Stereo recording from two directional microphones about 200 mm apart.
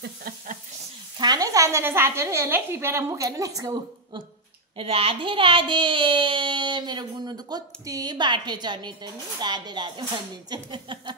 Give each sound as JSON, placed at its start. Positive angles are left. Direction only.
{"t": 0.0, "sound": "a sound", "side_deg": -50}
{"t": 1.1, "sound": "a woman's voice", "side_deg": -20}
{"t": 4.7, "sound": "a child's voice", "side_deg": -30}